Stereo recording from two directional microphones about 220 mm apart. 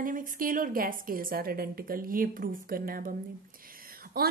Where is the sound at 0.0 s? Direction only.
40° right (ahead or behind).